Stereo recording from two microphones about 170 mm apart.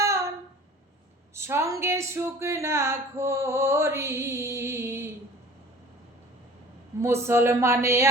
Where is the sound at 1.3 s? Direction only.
15° right (ahead or behind).